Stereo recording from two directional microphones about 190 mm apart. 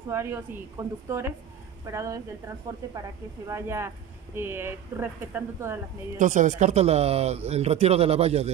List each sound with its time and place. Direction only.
0.1 s speech: 15° right (ahead or behind)
6.1 s speech: 40° right (ahead or behind)